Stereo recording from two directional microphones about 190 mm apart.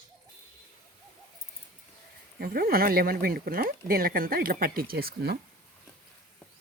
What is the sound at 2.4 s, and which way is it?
Speech, 50° right (ahead or behind).